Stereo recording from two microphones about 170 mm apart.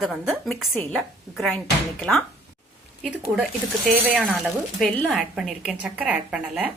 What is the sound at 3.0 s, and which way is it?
A woman's voice, 5° right (ahead or behind).